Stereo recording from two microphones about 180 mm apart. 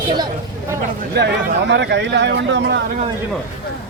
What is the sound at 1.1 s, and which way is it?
Speech, 65° right (ahead or behind).